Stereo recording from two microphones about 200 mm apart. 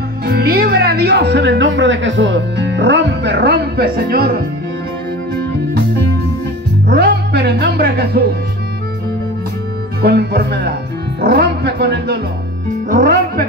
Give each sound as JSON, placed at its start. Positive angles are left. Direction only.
{"t": 0.2, "sound": "speech", "side_deg": -50}
{"t": 6.9, "sound": "music", "side_deg": -55}
{"t": 10.0, "sound": "speech", "side_deg": -55}
{"t": 12.9, "sound": "music", "side_deg": -45}